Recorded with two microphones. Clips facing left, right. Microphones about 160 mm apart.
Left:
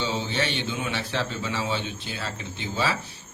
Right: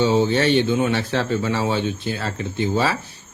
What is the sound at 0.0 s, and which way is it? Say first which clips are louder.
Speech: right 10 dB; 45° right (ahead or behind).